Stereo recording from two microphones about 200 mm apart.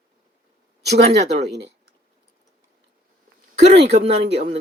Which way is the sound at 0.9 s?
30° right (ahead or behind).